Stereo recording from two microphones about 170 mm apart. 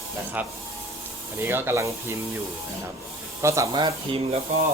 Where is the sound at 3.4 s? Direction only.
15° right (ahead or behind).